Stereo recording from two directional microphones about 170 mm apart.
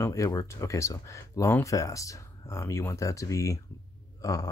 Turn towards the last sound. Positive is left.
turn(degrees=20)  # may be behind; listen again after turning